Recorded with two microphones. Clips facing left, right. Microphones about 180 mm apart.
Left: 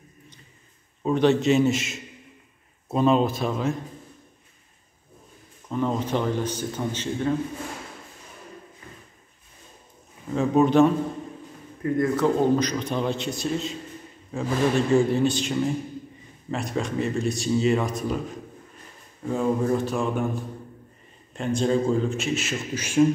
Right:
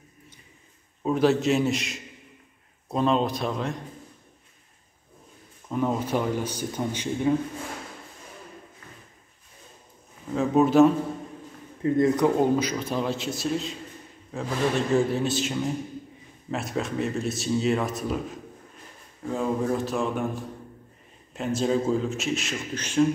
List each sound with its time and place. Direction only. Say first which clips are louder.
1.0 s speech: left 2 dB; 5° right (ahead or behind)
5.7 s speech: even; 10° right (ahead or behind)
10.3 s speech: even; centre (ahead or behind)
11.8 s a man's voice: right 2 dB; 20° right (ahead or behind)
12.3 s speech: left 1 dB; 10° right (ahead or behind)
14.9 s speech: left 3 dB; centre (ahead or behind)
21.3 s speech: left 2 dB; 5° right (ahead or behind)